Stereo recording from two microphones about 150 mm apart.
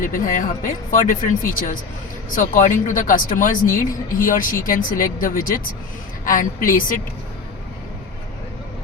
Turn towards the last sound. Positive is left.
turn(degrees=65)  # may be behind; listen again after turning